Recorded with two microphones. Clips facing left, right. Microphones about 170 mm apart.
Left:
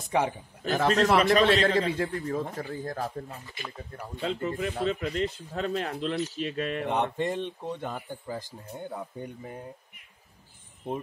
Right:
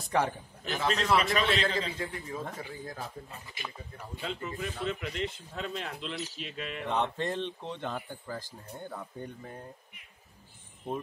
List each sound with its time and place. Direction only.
0.1 s speech: 15° left (ahead or behind)
0.7 s a man's voice: 45° left (ahead or behind)
2.0 s speech: 55° left (ahead or behind)
4.4 s speech: 40° left (ahead or behind)
6.9 s speech: 15° left (ahead or behind)